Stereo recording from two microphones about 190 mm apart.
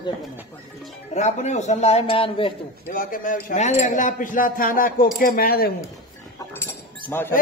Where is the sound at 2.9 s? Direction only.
45° left (ahead or behind).